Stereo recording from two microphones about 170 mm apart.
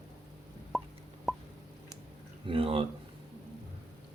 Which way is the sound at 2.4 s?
35° right (ahead or behind).